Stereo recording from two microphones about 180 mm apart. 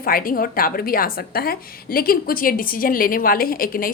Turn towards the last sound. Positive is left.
turn(degrees=55)  # may be behind; listen again after turning